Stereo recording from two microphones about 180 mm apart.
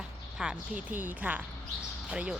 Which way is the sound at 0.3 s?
5° right (ahead or behind).